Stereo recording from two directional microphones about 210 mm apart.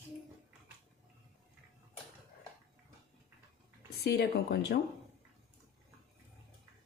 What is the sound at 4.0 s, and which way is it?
Speech, 50° left (ahead or behind).